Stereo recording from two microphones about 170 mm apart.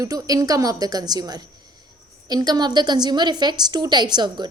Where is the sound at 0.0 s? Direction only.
20° right (ahead or behind).